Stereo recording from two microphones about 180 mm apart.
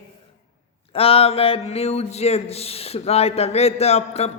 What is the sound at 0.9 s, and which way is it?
Speech, 30° left (ahead or behind).